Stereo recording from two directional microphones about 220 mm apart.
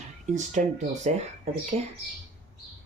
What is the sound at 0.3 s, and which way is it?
Speech, 35° right (ahead or behind).